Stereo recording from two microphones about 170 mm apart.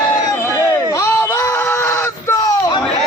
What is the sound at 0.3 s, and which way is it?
Fowl, 15° left (ahead or behind).